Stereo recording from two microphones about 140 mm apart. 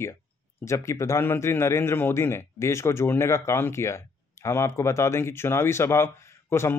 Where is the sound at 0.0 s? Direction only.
20° left (ahead or behind).